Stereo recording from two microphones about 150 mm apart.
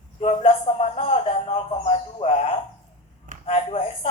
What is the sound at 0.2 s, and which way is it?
A man's voice, 35° left (ahead or behind).